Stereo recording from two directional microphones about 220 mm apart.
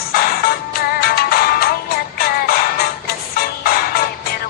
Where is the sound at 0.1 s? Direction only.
40° left (ahead or behind).